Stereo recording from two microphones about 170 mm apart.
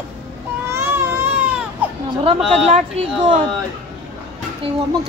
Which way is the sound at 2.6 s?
40° right (ahead or behind).